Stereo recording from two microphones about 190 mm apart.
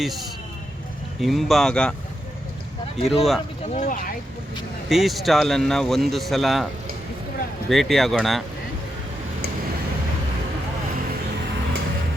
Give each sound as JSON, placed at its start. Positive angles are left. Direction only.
{"t": 1.2, "sound": "speech", "side_deg": 0}
{"t": 3.0, "sound": "speech", "side_deg": 0}
{"t": 3.7, "sound": "speech", "side_deg": 40}
{"t": 4.9, "sound": "speech", "side_deg": 0}
{"t": 7.7, "sound": "speech", "side_deg": 0}